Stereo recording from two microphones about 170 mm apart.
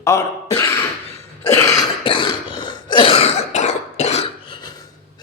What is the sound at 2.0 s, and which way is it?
Cough, 30° left (ahead or behind).